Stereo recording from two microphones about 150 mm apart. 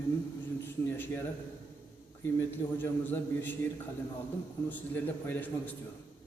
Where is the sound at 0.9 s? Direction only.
15° left (ahead or behind).